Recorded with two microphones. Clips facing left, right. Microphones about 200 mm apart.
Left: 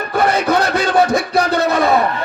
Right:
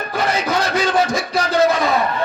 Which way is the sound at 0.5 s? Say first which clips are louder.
Left 3 dB; 60° left (ahead or behind).